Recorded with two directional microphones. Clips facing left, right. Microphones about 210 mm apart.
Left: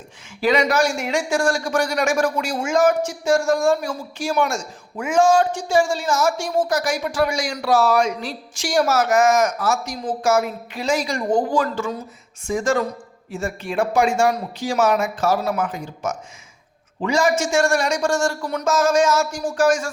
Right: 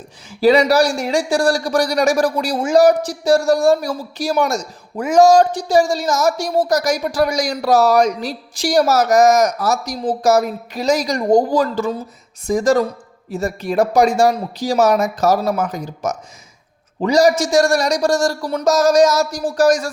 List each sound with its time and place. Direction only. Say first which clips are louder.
0.3 s a man's voice: right 6 dB; 35° right (ahead or behind)